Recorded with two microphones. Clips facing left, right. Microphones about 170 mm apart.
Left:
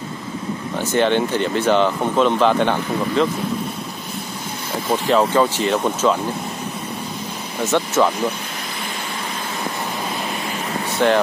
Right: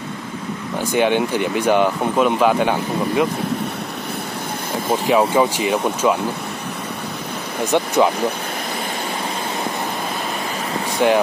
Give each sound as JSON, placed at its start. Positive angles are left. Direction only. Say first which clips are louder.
{"t": 0.9, "sound": "speech", "louder": "even", "side_deg": -10}
{"t": 5.0, "sound": "speech", "louder": "even", "side_deg": -10}
{"t": 7.6, "sound": "speech", "louder": "right 1 dB", "side_deg": -15}
{"t": 11.0, "sound": "speech", "louder": "right 1 dB", "side_deg": -10}